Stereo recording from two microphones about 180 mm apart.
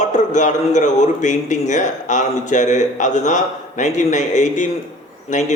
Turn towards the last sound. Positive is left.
turn(degrees=40)  # may be behind; listen again after turning